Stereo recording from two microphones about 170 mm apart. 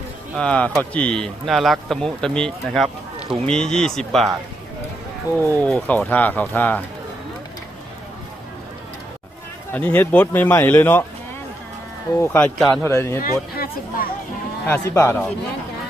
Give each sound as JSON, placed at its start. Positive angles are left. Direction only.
{"t": 0.3, "sound": "speech", "side_deg": 5}
{"t": 5.5, "sound": "speech", "side_deg": 10}
{"t": 9.7, "sound": "speech", "side_deg": 10}
{"t": 12.1, "sound": "speech", "side_deg": 10}
{"t": 13.2, "sound": "speech", "side_deg": 60}
{"t": 14.7, "sound": "speech", "side_deg": 15}